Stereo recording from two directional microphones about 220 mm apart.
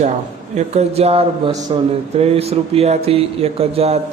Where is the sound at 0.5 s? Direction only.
30° right (ahead or behind).